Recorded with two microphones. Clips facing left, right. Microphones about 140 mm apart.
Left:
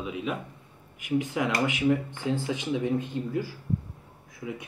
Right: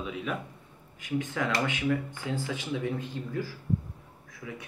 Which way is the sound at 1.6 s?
20° left (ahead or behind).